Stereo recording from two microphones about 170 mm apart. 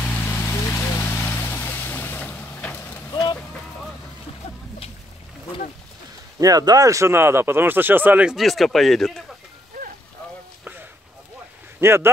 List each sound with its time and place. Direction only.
0.0 s vehicle: 10° left (ahead or behind)
3.1 s vehicle: 25° left (ahead or behind)
6.4 s speech: 20° right (ahead or behind); by 9.2 s centre (ahead or behind)
11.8 s speech: 15° right (ahead or behind)